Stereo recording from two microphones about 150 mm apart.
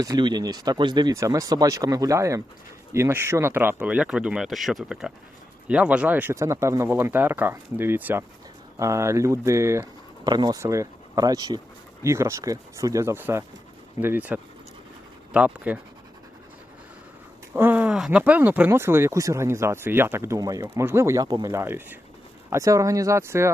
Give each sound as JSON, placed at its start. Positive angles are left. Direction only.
{"t": 0.0, "sound": "speech", "side_deg": -25}
{"t": 17.5, "sound": "speech", "side_deg": -10}